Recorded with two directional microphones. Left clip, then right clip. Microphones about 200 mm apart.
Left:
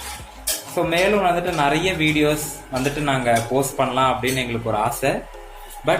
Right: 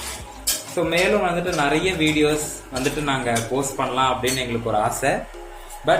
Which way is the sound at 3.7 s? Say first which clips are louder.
Left 1 dB; 25° left (ahead or behind).